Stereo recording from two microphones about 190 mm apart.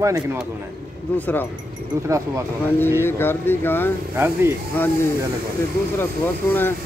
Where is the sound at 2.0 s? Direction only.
15° right (ahead or behind).